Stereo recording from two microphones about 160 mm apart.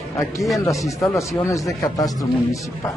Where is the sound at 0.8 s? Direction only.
20° left (ahead or behind).